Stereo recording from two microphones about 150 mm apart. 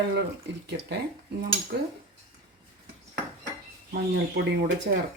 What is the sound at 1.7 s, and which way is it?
Speech, 90° right.